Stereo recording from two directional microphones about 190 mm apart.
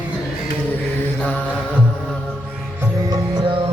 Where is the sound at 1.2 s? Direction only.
5° left (ahead or behind).